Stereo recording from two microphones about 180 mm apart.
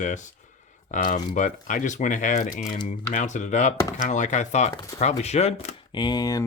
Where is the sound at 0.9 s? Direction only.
45° left (ahead or behind).